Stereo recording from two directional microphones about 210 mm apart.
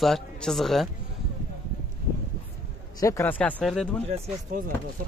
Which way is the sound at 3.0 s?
10° left (ahead or behind).